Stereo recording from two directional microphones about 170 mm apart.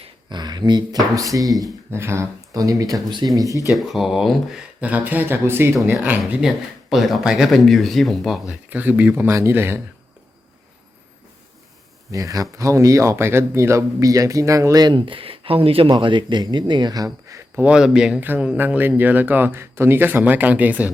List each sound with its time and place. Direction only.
0.0 s speech: 25° right (ahead or behind)
3.8 s speech: centre (ahead or behind)
12.1 s speech: 20° right (ahead or behind)